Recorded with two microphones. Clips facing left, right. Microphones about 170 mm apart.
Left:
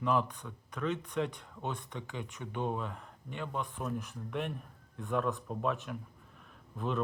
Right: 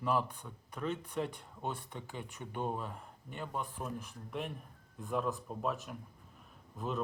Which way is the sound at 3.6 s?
10° right (ahead or behind).